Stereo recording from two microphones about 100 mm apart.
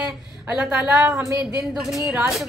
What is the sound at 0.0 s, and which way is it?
A woman's voice, 15° right (ahead or behind).